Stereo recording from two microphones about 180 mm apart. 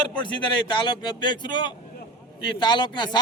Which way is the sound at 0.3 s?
25° left (ahead or behind).